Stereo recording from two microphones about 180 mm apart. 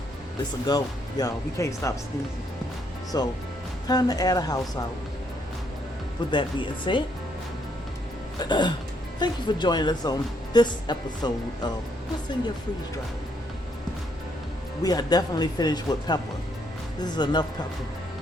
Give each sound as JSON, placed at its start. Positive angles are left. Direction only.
{"t": 0.6, "sound": "speech", "side_deg": 20}
{"t": 3.1, "sound": "speech", "side_deg": 20}
{"t": 6.3, "sound": "speech", "side_deg": 25}
{"t": 8.4, "sound": "speech", "side_deg": 25}
{"t": 14.8, "sound": "speech", "side_deg": 20}